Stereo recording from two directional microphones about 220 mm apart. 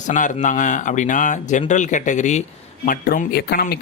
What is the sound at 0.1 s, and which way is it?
Speech, 35° left (ahead or behind).